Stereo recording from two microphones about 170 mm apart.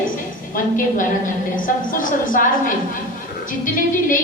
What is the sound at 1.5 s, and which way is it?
A woman's voice, 55° left (ahead or behind).